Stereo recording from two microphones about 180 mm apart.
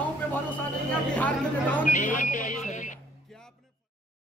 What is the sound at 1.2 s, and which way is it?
Speech, 10° left (ahead or behind).